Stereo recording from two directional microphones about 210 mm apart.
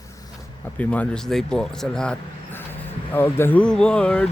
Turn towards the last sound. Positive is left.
turn(degrees=5)  # may be behind; listen again after turning